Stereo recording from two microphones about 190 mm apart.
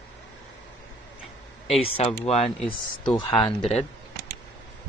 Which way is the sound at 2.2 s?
30° left (ahead or behind).